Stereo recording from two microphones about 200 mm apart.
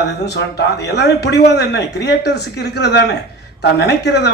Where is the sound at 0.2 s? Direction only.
55° left (ahead or behind).